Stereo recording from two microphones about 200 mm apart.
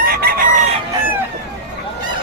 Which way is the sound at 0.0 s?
50° right (ahead or behind).